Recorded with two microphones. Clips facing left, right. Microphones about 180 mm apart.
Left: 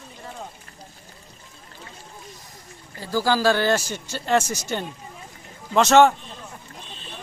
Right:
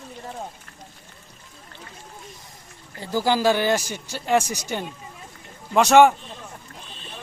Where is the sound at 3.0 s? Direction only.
20° right (ahead or behind).